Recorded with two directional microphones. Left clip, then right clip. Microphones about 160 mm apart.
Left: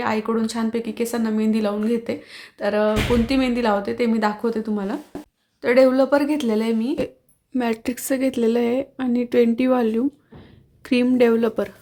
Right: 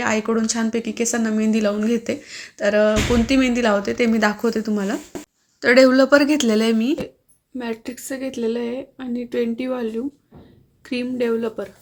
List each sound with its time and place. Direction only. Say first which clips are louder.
0.0 s speech: right 2 dB; 10° right (ahead or behind)
7.5 s speech: left 5 dB; 35° left (ahead or behind)